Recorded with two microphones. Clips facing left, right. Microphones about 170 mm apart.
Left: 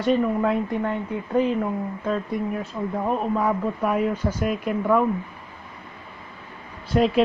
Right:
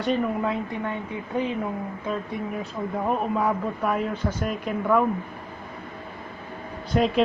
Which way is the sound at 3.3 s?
5° left (ahead or behind).